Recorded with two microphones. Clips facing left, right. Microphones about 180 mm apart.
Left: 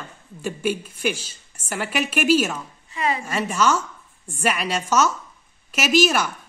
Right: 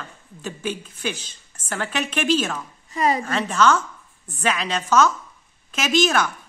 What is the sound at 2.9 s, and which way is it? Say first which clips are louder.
Speech: right 4 dB; 40° right (ahead or behind).